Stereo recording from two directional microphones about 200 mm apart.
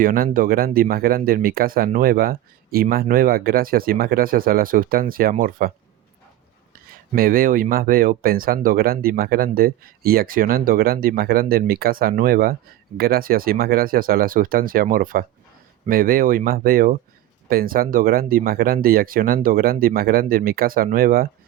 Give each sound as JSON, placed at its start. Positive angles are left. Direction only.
{"t": 0.0, "sound": "speech", "side_deg": -45}
{"t": 7.2, "sound": "speech", "side_deg": -45}